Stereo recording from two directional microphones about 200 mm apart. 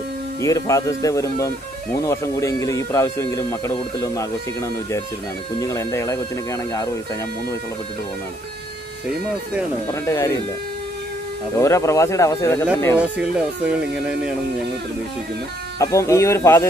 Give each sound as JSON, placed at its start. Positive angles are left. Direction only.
{"t": 0.4, "sound": "speech", "side_deg": 15}
{"t": 10.0, "sound": "speech", "side_deg": 15}
{"t": 11.6, "sound": "speech", "side_deg": 15}
{"t": 13.0, "sound": "speech", "side_deg": -5}
{"t": 15.8, "sound": "speech", "side_deg": 15}